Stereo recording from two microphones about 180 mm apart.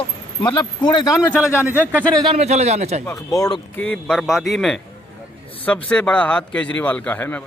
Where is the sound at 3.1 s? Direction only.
20° left (ahead or behind).